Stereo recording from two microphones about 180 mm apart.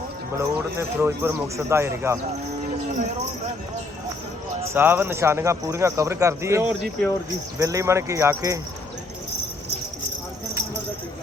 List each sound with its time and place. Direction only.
0.3 s speech: 15° right (ahead or behind)
4.6 s speech: 10° right (ahead or behind)